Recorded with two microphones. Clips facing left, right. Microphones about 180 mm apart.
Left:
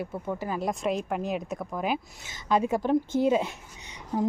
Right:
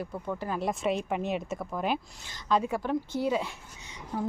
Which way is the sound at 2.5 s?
20° left (ahead or behind).